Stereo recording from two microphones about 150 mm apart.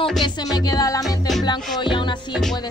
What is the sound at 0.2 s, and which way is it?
Music, 25° left (ahead or behind).